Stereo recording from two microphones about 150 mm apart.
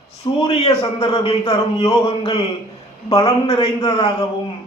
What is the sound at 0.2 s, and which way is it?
A man's voice, 35° left (ahead or behind).